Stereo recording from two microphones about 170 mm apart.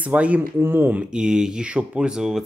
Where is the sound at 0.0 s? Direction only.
10° right (ahead or behind).